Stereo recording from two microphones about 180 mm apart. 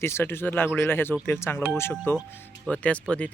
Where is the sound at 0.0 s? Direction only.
15° left (ahead or behind).